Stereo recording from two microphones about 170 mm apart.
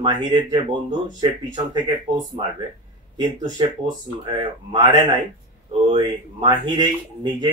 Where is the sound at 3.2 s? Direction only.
30° right (ahead or behind).